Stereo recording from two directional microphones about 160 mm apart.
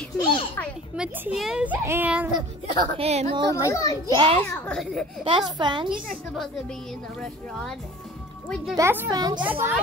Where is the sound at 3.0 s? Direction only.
40° right (ahead or behind).